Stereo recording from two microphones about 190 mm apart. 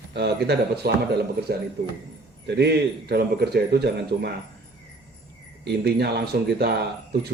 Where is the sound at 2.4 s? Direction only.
60° right (ahead or behind).